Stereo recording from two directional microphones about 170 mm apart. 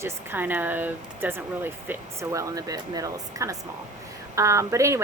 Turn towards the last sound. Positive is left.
turn(degrees=-15)  # may be behind; listen again after turning